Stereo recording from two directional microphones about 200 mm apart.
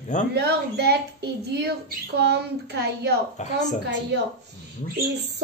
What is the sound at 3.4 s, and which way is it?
Speech, 35° left (ahead or behind).